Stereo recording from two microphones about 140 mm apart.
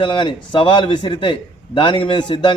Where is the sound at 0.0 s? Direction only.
40° left (ahead or behind).